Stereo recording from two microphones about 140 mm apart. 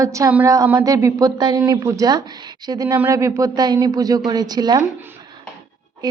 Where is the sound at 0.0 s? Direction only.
20° right (ahead or behind).